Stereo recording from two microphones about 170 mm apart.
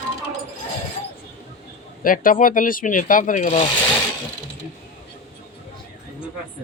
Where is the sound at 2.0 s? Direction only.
55° left (ahead or behind).